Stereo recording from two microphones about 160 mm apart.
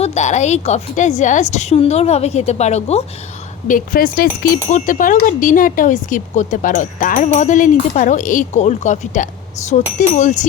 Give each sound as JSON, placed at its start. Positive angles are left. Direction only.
{"t": 0.0, "sound": "speech", "side_deg": 45}
{"t": 3.7, "sound": "speech", "side_deg": 60}